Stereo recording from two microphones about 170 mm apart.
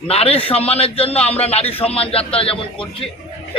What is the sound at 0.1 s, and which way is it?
A man's voice, 35° left (ahead or behind).